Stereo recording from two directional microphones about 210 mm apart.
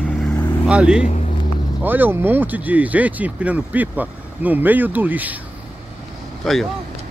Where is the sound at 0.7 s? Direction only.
5° right (ahead or behind).